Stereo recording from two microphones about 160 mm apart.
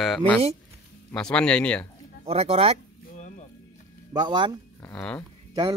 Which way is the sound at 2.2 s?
40° right (ahead or behind).